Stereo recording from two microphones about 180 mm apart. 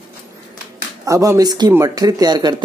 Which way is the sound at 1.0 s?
15° right (ahead or behind).